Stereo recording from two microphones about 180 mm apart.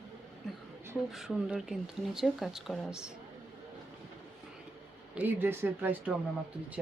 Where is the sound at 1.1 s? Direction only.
Centre (ahead or behind).